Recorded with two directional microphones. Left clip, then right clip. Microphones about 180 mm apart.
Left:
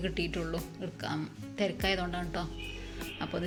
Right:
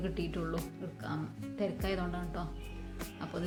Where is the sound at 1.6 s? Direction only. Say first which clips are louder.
Left 5 dB; 10° left (ahead or behind).